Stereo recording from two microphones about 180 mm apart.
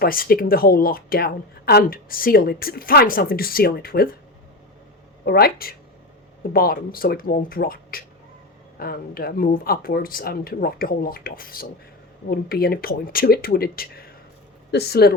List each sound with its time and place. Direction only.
0.0 s speech: 55° left (ahead or behind)
5.2 s speech: 60° left (ahead or behind)